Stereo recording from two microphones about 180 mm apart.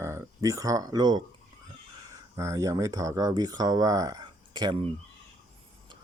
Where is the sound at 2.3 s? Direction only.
20° right (ahead or behind).